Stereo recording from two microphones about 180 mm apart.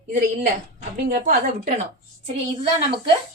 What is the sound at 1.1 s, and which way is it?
Speech, 50° right (ahead or behind).